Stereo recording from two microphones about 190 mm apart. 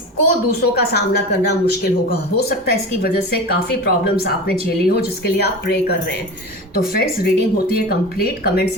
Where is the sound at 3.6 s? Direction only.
55° left (ahead or behind).